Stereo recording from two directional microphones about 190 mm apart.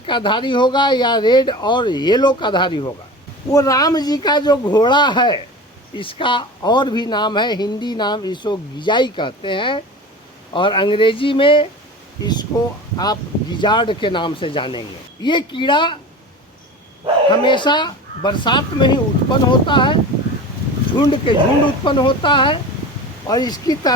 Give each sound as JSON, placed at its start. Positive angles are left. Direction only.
{"t": 0.0, "sound": "speech", "side_deg": 25}
{"t": 12.2, "sound": "a sound", "side_deg": 20}
{"t": 13.0, "sound": "speech", "side_deg": 20}
{"t": 17.3, "sound": "speech", "side_deg": 25}